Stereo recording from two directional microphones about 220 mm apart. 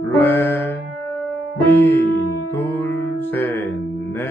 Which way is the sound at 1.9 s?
50° left (ahead or behind).